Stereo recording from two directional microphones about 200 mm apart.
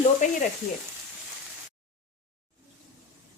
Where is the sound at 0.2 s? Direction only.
35° left (ahead or behind).